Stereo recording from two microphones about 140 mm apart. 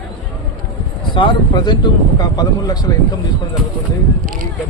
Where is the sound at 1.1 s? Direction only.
35° left (ahead or behind).